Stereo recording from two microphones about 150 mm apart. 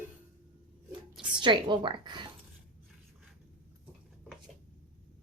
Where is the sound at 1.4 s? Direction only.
30° right (ahead or behind).